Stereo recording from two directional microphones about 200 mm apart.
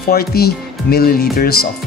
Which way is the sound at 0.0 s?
50° left (ahead or behind).